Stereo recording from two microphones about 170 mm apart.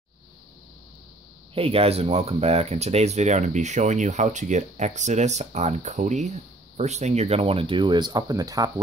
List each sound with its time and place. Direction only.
1.5 s speech: 35° right (ahead or behind)